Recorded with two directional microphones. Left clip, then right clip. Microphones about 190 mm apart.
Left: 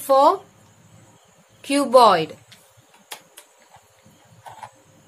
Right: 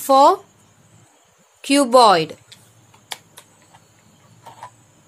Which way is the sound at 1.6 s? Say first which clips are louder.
Right 2 dB; 55° right (ahead or behind).